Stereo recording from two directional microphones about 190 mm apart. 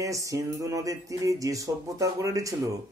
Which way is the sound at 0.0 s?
15° right (ahead or behind).